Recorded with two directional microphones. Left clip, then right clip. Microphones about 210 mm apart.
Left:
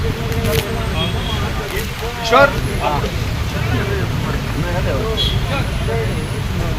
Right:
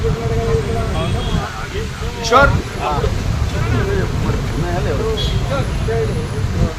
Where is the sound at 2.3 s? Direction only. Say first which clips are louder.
Even; 45° right (ahead or behind).